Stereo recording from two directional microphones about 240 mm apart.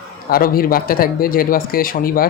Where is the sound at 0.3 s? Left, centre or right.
Left.